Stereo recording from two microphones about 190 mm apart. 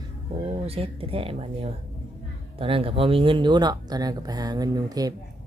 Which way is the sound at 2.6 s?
30° right (ahead or behind).